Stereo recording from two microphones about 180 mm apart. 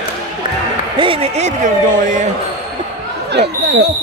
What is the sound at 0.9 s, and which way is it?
A man's voice, 30° right (ahead or behind).